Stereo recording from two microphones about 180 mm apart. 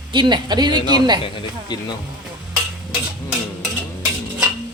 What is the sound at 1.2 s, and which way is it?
Speech, 25° left (ahead or behind).